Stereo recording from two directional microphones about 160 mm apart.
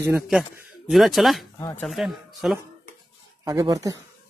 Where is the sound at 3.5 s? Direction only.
25° right (ahead or behind).